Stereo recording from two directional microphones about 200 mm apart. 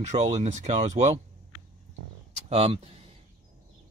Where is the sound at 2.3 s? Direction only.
30° right (ahead or behind).